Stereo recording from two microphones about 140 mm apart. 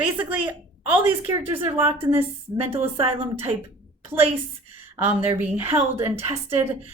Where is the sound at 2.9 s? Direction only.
45° right (ahead or behind).